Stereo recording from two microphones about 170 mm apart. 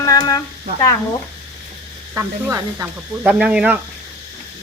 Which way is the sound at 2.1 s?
15° right (ahead or behind).